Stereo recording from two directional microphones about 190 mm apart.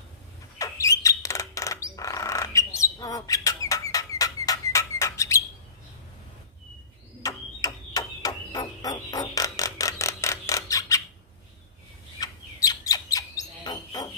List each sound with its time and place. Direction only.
0.6 s bird: 15° left (ahead or behind)
7.2 s a sound: 20° left (ahead or behind)
12.2 s bird: 20° left (ahead or behind)